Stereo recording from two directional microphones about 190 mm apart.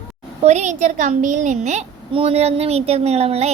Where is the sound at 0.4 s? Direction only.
40° right (ahead or behind).